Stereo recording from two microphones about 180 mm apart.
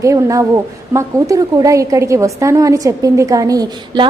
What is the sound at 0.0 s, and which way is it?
A woman's voice, 15° right (ahead or behind).